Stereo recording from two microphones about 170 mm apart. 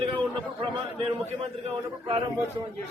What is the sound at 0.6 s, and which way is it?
A man's voice, 30° right (ahead or behind).